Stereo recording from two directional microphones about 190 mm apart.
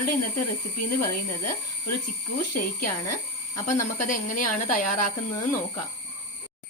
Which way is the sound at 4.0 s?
45° left (ahead or behind).